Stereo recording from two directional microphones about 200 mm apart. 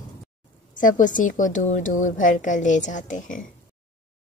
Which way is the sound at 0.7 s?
40° left (ahead or behind).